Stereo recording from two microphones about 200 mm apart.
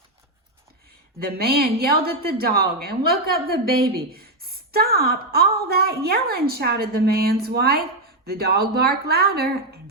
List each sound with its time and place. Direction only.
1.2 s speech: 50° right (ahead or behind)